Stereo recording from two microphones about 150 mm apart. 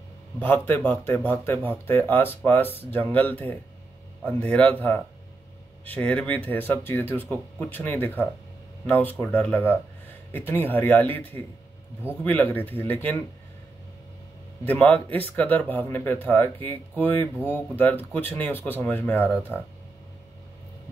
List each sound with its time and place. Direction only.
0.4 s speech: 10° left (ahead or behind)
14.6 s speech: 10° left (ahead or behind)